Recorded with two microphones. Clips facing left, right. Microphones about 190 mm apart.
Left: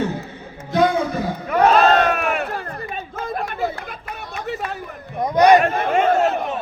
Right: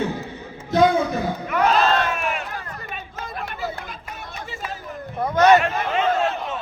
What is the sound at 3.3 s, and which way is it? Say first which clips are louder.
Chatter: left 5 dB; 50° left (ahead or behind).